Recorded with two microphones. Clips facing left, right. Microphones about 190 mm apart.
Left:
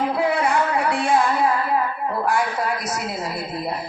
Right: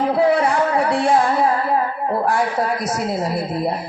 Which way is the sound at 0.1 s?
35° right (ahead or behind).